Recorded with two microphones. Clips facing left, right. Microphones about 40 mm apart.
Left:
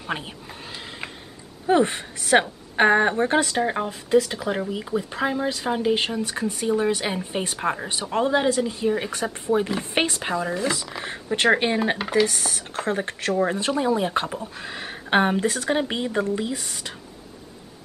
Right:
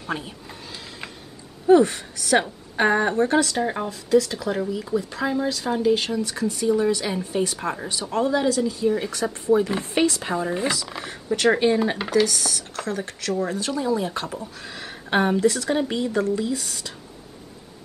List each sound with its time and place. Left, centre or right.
0.7 s a sound: left
1.7 s speech: left
10.9 s speech: centre
11.3 s speech: left